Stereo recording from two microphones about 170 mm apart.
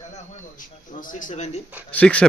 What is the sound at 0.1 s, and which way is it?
A man's voice, 50° left (ahead or behind).